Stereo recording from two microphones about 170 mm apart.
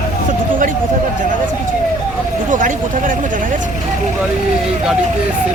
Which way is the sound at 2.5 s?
50° right (ahead or behind).